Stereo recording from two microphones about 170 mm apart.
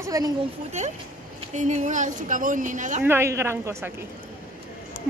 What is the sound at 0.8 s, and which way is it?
A woman's voice, 45° right (ahead or behind).